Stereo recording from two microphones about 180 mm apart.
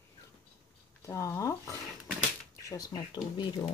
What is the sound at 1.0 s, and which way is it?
Speech, 15° left (ahead or behind).